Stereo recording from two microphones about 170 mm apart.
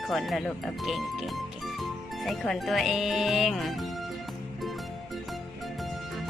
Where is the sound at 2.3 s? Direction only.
Centre (ahead or behind).